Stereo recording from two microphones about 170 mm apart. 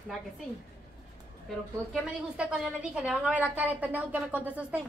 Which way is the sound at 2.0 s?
5° right (ahead or behind).